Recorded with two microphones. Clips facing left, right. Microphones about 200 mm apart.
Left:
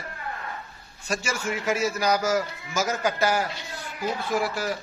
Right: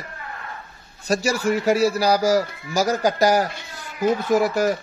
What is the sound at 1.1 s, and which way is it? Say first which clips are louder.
A man's voice: right 8 dB; 35° right (ahead or behind).